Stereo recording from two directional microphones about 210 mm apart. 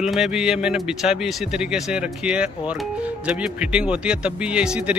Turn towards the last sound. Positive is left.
turn(degrees=-5)  # may be behind; listen again after turning